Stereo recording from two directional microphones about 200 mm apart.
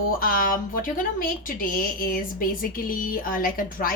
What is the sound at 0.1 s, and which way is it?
Speech, 45° left (ahead or behind).